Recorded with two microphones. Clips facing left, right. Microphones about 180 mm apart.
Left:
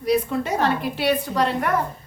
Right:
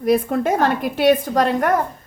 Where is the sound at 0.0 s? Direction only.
50° right (ahead or behind).